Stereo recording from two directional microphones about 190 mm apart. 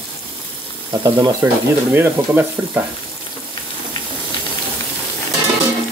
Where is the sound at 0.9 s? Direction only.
25° right (ahead or behind).